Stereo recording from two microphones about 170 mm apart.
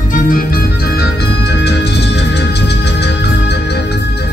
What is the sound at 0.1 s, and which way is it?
Organ, 55° left (ahead or behind).